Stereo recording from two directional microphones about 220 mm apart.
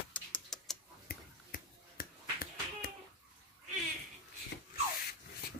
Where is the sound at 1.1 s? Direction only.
40° left (ahead or behind).